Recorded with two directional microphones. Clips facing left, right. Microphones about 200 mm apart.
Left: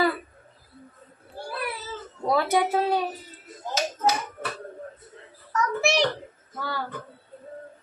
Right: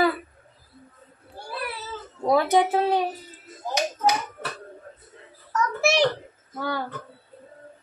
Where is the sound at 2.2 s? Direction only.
15° right (ahead or behind).